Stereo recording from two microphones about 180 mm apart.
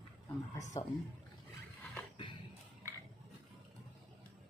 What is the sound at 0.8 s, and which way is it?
Speech, 20° left (ahead or behind).